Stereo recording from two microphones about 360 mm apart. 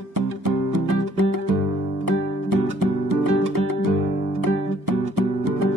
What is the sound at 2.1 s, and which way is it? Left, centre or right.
Music, right.